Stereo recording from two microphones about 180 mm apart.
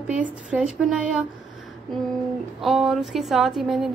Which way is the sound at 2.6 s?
Centre (ahead or behind).